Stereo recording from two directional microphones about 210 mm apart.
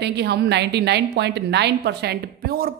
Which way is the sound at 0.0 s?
55° right (ahead or behind).